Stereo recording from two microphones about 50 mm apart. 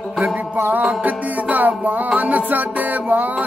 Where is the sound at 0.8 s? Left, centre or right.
Right.